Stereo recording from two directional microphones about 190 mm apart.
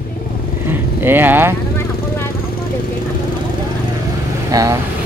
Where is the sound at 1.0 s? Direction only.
10° right (ahead or behind).